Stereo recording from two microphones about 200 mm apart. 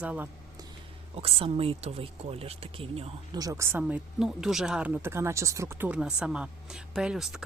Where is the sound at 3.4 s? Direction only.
15° right (ahead or behind).